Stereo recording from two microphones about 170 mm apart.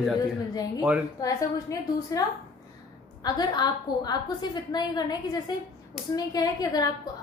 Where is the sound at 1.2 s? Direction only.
25° left (ahead or behind).